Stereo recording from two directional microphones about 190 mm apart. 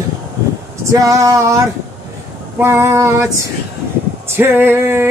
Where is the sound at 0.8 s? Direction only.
15° right (ahead or behind).